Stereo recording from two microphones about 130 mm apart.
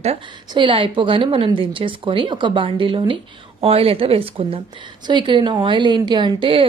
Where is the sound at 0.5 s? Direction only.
40° right (ahead or behind).